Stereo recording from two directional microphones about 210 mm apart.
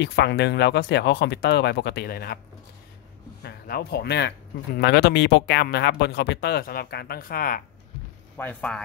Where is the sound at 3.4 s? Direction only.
50° left (ahead or behind).